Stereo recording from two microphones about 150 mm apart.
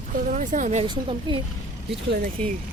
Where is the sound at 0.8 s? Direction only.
40° right (ahead or behind).